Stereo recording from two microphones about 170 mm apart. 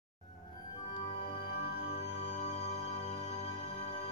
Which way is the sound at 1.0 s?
35° left (ahead or behind).